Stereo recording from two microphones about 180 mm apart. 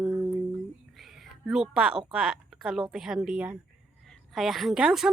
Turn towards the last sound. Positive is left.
turn(degrees=-5)  # may be behind; listen again after turning